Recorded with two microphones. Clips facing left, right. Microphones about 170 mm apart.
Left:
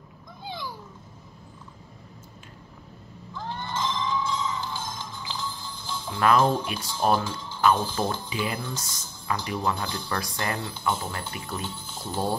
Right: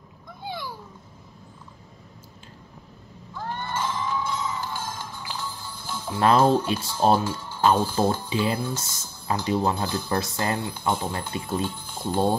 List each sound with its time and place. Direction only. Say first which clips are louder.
3.3 s a sound: right 2 dB; 10° right (ahead or behind)
6.1 s speech: right 3 dB; 30° right (ahead or behind)
7.2 s speech: right 3 dB; 10° right (ahead or behind)
7.6 s speech: right 3 dB; 30° right (ahead or behind)